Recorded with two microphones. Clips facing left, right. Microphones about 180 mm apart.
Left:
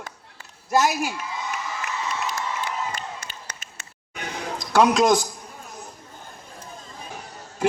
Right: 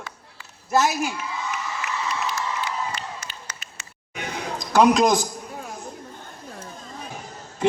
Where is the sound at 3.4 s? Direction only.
55° left (ahead or behind).